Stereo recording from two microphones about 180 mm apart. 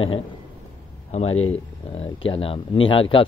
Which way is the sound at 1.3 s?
90° left.